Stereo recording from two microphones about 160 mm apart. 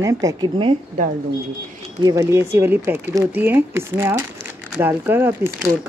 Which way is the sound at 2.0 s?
20° right (ahead or behind).